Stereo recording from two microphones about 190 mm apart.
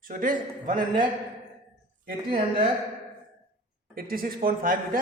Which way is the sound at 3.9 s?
50° right (ahead or behind).